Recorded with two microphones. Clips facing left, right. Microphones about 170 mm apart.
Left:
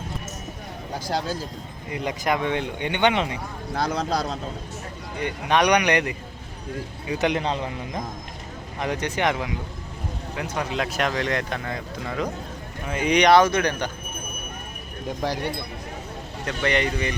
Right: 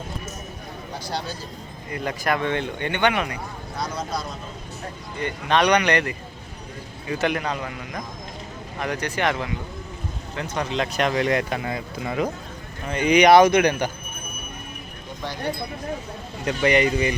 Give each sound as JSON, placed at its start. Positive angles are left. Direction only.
{"t": 1.9, "sound": "speech", "side_deg": 20}
{"t": 3.8, "sound": "speech", "side_deg": 65}
{"t": 5.2, "sound": "speech", "side_deg": 15}
{"t": 16.5, "sound": "speech", "side_deg": -10}